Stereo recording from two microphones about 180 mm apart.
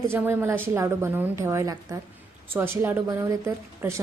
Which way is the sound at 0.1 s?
10° right (ahead or behind).